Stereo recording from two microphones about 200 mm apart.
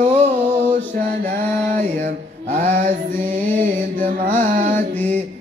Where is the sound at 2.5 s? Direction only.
35° right (ahead or behind).